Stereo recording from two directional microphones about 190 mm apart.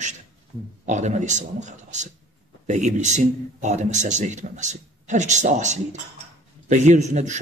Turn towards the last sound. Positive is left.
turn(degrees=-40)  # may be behind; listen again after turning